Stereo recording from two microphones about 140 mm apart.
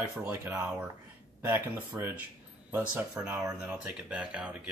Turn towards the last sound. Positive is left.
turn(degrees=-10)  # may be behind; listen again after turning